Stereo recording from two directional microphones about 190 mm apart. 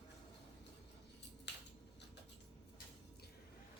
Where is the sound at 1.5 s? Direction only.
65° left (ahead or behind).